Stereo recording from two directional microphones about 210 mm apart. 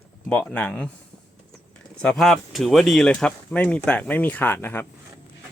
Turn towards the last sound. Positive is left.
turn(degrees=10)  # may be behind; listen again after turning